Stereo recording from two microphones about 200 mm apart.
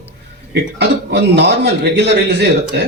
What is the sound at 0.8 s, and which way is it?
Speech, 55° right (ahead or behind).